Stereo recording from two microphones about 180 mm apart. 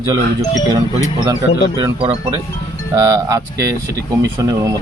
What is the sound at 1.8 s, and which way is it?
Speech, 25° right (ahead or behind).